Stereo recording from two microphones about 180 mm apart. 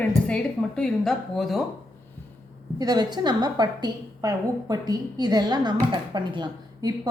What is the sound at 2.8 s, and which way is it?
A woman's voice, 20° right (ahead or behind).